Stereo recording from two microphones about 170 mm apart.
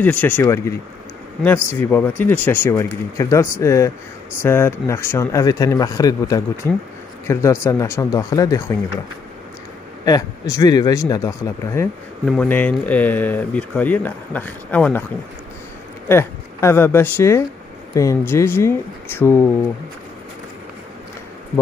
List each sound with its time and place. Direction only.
0.0 s speech: 10° left (ahead or behind)
10.0 s speech: 20° left (ahead or behind)
16.1 s speech: 15° left (ahead or behind)